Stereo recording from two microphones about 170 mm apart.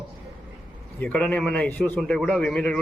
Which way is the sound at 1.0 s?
10° left (ahead or behind).